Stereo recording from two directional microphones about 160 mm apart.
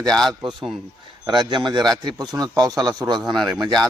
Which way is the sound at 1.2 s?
30° right (ahead or behind).